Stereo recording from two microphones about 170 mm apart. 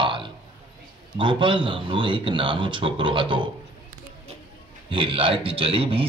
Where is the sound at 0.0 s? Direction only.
30° right (ahead or behind).